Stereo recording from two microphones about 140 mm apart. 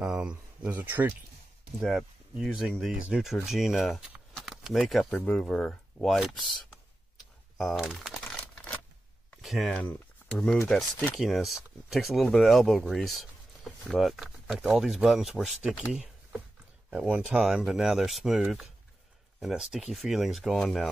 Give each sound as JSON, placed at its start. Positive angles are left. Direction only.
{"t": 0.0, "sound": "speech", "side_deg": -5}
{"t": 1.8, "sound": "speech", "side_deg": 0}
{"t": 9.4, "sound": "speech", "side_deg": 0}